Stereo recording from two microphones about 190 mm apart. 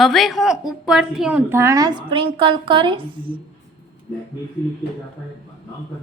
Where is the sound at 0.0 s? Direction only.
Centre (ahead or behind); by 3.4 s 25° right (ahead or behind).